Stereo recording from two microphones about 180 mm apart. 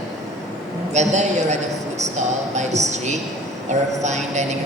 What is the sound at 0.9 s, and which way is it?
A woman's voice, 40° right (ahead or behind).